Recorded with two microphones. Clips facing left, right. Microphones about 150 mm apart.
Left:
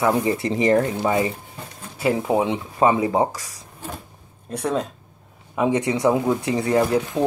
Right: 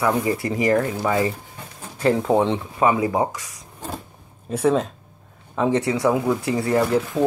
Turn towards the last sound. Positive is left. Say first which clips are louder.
# even
turn(degrees=15)  # may be behind; listen again after turning